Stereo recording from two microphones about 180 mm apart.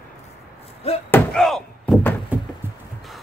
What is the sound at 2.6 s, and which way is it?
Music, 10° right (ahead or behind).